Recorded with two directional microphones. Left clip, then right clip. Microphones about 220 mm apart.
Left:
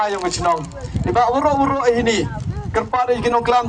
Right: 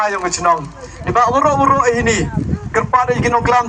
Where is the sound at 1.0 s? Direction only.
15° right (ahead or behind).